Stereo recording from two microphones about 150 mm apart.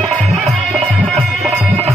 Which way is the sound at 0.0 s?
Centre (ahead or behind).